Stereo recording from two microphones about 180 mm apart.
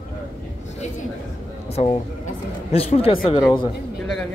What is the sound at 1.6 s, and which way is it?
A man's voice, 35° left (ahead or behind).